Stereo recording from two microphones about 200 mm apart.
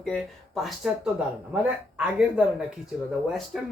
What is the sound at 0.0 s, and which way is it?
Speech, centre (ahead or behind).